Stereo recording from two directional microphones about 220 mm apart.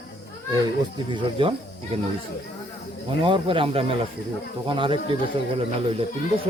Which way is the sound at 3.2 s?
25° right (ahead or behind).